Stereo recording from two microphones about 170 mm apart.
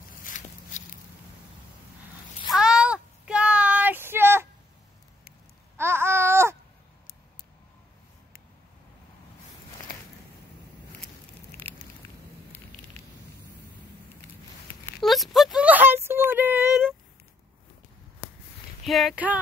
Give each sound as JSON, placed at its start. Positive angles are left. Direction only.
{"t": 0.2, "sound": "walk", "side_deg": 50}
{"t": 2.5, "sound": "child singing", "side_deg": -5}
{"t": 5.8, "sound": "babbling", "side_deg": -15}
{"t": 15.0, "sound": "a sound", "side_deg": 0}
{"t": 18.9, "sound": "speech", "side_deg": 0}